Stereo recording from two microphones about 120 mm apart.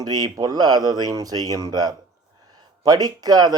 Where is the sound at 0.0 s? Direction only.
35° right (ahead or behind).